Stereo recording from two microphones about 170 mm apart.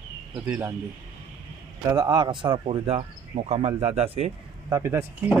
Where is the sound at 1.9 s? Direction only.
20° right (ahead or behind); by 4.3 s 35° right (ahead or behind).